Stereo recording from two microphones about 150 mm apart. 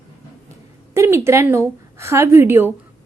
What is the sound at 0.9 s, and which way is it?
A woman's voice, 15° right (ahead or behind).